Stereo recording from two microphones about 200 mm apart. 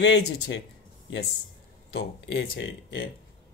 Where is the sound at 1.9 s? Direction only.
75° left (ahead or behind).